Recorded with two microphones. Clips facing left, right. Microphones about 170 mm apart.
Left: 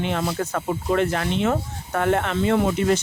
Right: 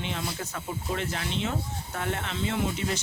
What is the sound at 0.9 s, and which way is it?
Speech, 60° left (ahead or behind).